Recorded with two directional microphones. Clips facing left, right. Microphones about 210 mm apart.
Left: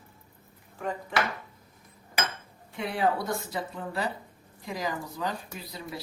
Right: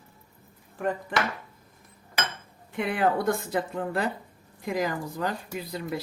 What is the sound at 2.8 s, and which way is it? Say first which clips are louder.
Speech: right 3 dB; 55° right (ahead or behind).